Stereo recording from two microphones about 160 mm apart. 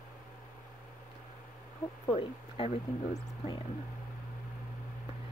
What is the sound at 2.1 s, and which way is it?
Speech, 40° left (ahead or behind).